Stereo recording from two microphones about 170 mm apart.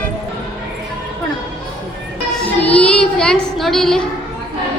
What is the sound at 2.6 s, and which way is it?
Child singing, 10° left (ahead or behind).